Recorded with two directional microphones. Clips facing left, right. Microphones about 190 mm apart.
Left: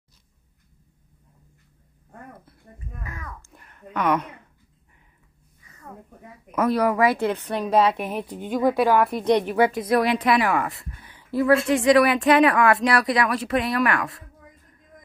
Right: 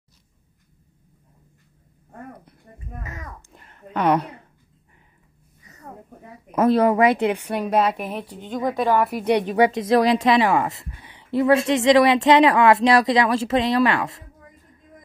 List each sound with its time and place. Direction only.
3.0 s babbling: 20° right (ahead or behind)
6.5 s a woman's voice: 25° right (ahead or behind); by 9.1 s 5° left (ahead or behind)
9.1 s a woman's voice: 10° right (ahead or behind)
9.5 s a woman's voice: 20° right (ahead or behind)